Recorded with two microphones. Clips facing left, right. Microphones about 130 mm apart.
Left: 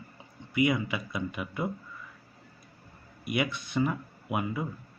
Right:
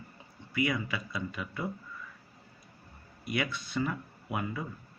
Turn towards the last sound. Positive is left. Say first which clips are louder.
# left 4 dB
turn(degrees=15)  # may be behind; listen again after turning